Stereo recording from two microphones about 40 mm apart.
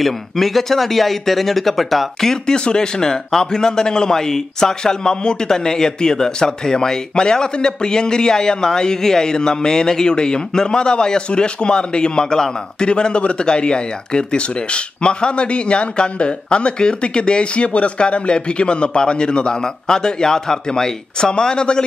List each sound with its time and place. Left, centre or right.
0.0 s speech: centre
2.4 s a man's voice: centre